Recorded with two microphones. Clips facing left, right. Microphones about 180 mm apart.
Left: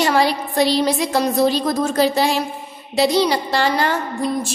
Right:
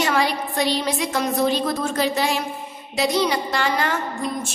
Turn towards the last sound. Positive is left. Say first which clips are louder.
# left 4 dB
turn(degrees=35)  # may be behind; listen again after turning